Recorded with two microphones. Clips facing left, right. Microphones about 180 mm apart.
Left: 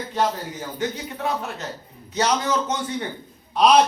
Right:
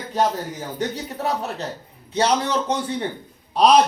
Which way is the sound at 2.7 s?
30° right (ahead or behind).